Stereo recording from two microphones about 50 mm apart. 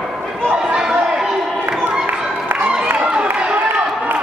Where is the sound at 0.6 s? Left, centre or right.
Centre.